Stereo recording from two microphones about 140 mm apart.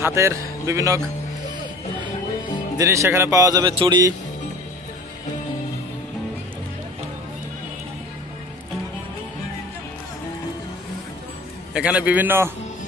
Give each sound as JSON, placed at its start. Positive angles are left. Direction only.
{"t": 0.0, "sound": "speech", "side_deg": -20}
{"t": 2.8, "sound": "speech", "side_deg": -20}
{"t": 3.7, "sound": "speech", "side_deg": -40}
{"t": 11.7, "sound": "a man's voice", "side_deg": -10}